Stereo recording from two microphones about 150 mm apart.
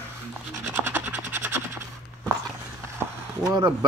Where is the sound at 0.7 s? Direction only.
15° right (ahead or behind).